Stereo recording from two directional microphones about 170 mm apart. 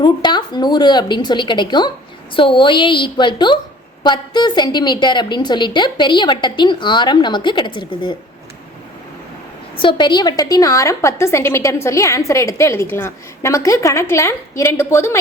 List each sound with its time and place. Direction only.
0.0 s a woman's voice: 25° left (ahead or behind)
9.8 s a woman's voice: 25° left (ahead or behind)